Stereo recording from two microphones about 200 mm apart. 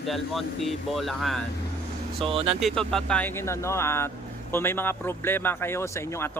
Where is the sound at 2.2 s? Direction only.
30° right (ahead or behind).